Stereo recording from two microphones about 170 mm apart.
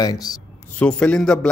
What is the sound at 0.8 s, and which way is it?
Speech, 5° left (ahead or behind).